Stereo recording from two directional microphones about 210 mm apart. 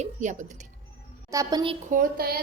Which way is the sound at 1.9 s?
45° right (ahead or behind).